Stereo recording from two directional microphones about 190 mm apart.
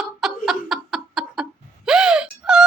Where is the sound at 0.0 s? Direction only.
Centre (ahead or behind).